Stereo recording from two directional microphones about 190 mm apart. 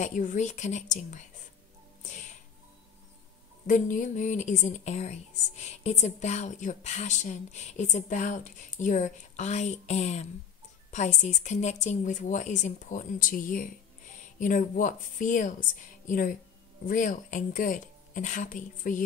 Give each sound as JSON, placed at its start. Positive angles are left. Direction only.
{"t": 0.0, "sound": "speech", "side_deg": 40}
{"t": 3.6, "sound": "speech", "side_deg": 45}